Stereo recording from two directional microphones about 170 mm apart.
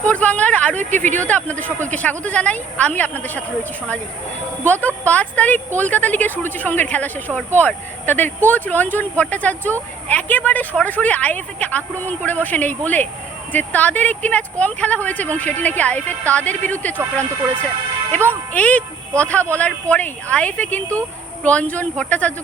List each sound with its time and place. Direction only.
0.0 s a woman's voice: 10° left (ahead or behind)
0.8 s speech: 45° right (ahead or behind)
1.3 s a woman's voice: 10° left (ahead or behind)
18.1 s a woman's voice: 10° left (ahead or behind)